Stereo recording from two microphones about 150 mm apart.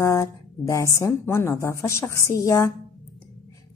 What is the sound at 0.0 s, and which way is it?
A woman's voice, 20° left (ahead or behind).